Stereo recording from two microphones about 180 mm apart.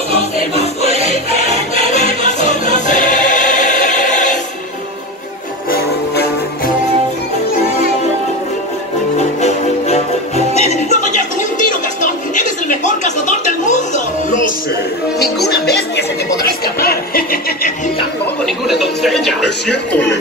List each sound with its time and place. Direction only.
0.1 s music: 35° right (ahead or behind)
1.9 s music: 40° left (ahead or behind)
5.7 s music: 55° left (ahead or behind)
9.4 s music: 35° left (ahead or behind)
15.4 s music: 65° left (ahead or behind)
18.4 s television: centre (ahead or behind)